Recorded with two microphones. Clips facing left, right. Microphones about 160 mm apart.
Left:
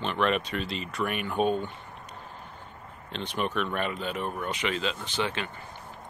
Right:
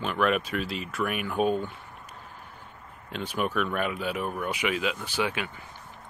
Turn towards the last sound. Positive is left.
turn(degrees=-10)  # may be behind; listen again after turning